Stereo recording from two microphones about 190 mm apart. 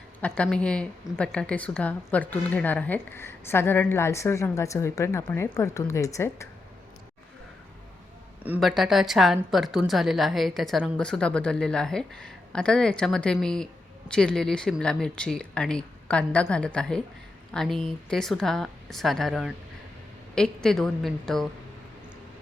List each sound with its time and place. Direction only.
0.2 s a woman's voice: 5° left (ahead or behind)
8.4 s a woman's voice: 5° right (ahead or behind)